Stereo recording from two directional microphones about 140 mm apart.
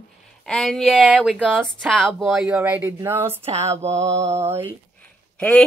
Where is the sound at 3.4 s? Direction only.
50° right (ahead or behind).